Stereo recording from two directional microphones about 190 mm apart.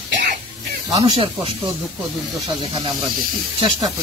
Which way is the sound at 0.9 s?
25° right (ahead or behind).